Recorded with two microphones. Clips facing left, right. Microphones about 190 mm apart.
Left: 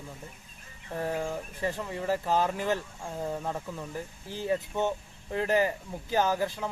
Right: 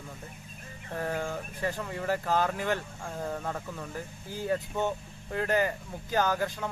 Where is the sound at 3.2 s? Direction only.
15° left (ahead or behind).